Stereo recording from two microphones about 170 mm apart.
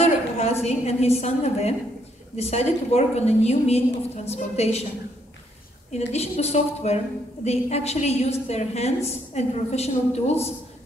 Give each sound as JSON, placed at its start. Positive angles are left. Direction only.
{"t": 0.0, "sound": "a woman's voice", "side_deg": 40}
{"t": 5.9, "sound": "a woman's voice", "side_deg": 40}